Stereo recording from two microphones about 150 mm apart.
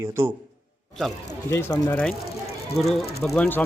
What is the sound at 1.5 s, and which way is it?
Speech, 15° left (ahead or behind).